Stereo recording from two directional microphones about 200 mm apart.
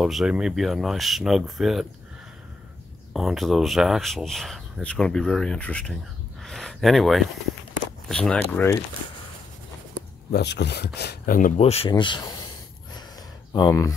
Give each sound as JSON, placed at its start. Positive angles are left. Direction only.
{"t": 0.0, "sound": "speech", "side_deg": 0}
{"t": 3.1, "sound": "speech", "side_deg": 0}
{"t": 10.3, "sound": "speech", "side_deg": 55}
{"t": 11.9, "sound": "a sound", "side_deg": 20}
{"t": 13.5, "sound": "speech", "side_deg": 20}